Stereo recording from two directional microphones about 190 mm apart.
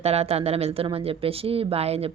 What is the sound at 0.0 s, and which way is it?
A woman's voice, 35° right (ahead or behind).